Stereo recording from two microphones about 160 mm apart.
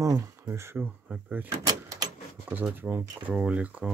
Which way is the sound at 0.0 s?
20° right (ahead or behind).